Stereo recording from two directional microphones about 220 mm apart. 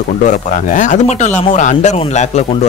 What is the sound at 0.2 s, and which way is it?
Speech, 35° left (ahead or behind).